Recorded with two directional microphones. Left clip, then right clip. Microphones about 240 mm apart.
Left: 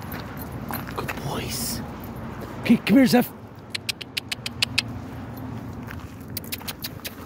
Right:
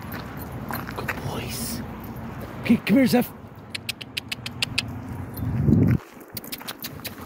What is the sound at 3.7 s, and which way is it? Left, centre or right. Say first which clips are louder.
Vehicle: left 2 dB; centre.